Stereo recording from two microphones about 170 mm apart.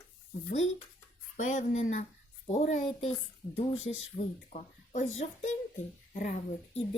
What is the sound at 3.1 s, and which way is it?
Speech, 35° left (ahead or behind).